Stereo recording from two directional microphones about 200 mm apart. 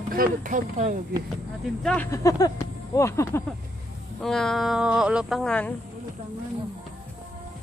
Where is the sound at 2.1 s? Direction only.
20° left (ahead or behind).